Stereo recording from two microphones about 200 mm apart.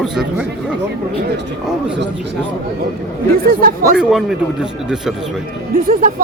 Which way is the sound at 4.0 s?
Centre (ahead or behind).